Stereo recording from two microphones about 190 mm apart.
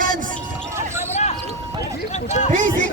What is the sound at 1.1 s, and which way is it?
Basketball bounce, 35° left (ahead or behind).